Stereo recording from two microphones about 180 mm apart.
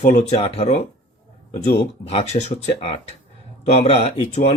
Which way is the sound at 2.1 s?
35° left (ahead or behind).